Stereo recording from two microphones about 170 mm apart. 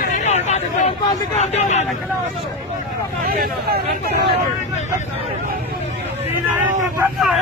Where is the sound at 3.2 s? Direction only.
60° right (ahead or behind).